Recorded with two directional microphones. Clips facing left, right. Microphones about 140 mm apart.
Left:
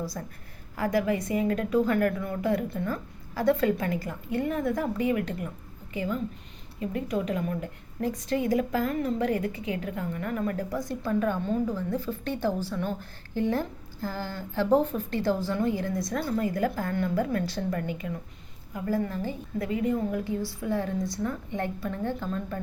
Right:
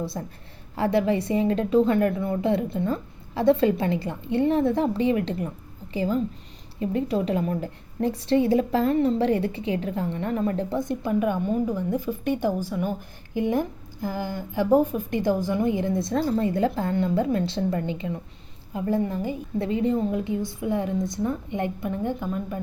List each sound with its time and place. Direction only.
0.0 s a woman's voice: 25° right (ahead or behind)
19.5 s a woman's voice: 30° right (ahead or behind); by 22.6 s 10° right (ahead or behind)